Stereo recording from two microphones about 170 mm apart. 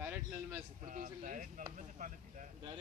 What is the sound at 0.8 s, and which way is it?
Speech, 50° right (ahead or behind).